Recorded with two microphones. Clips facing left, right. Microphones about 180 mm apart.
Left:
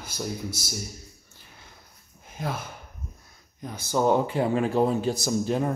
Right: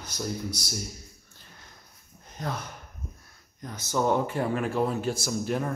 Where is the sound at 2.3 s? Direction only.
5° left (ahead or behind).